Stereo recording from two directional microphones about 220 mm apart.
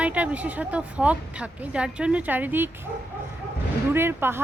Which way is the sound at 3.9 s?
10° right (ahead or behind).